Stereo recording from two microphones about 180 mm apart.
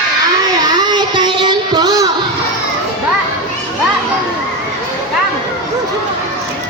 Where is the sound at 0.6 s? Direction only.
25° right (ahead or behind).